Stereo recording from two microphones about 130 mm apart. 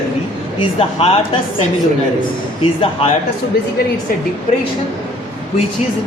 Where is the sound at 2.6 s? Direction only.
45° left (ahead or behind).